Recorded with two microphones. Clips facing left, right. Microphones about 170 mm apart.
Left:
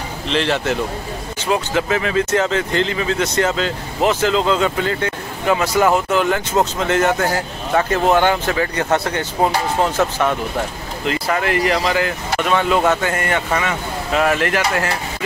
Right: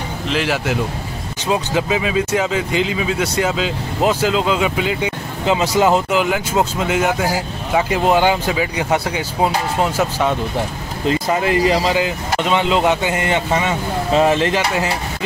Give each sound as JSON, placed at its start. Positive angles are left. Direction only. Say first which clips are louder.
{"t": 0.3, "sound": "speech", "louder": "left 1 dB", "side_deg": -5}